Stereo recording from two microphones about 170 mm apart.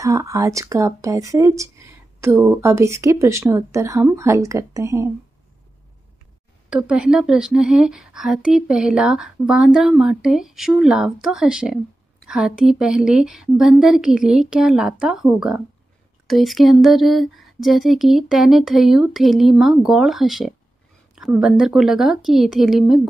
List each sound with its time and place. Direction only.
0.0 s speech: 20° right (ahead or behind)
6.7 s speech: 5° right (ahead or behind)